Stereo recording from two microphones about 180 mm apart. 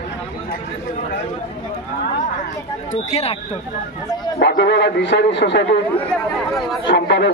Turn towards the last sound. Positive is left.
turn(degrees=70)  # may be behind; listen again after turning